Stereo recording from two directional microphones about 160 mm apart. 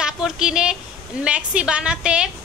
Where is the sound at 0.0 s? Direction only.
5° right (ahead or behind).